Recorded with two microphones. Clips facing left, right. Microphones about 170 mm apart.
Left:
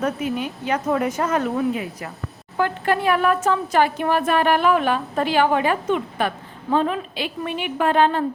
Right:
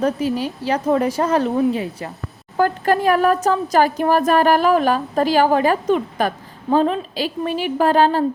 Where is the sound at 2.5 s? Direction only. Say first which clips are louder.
Right 4 dB; 40° right (ahead or behind).